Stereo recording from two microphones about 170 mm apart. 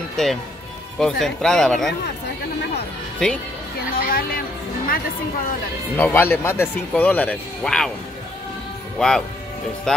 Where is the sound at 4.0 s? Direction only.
60° left (ahead or behind).